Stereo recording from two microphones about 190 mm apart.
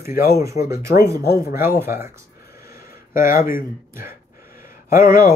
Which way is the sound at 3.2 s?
50° left (ahead or behind).